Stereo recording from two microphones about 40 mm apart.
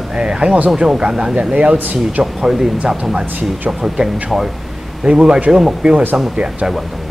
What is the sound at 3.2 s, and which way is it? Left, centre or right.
Speech, right.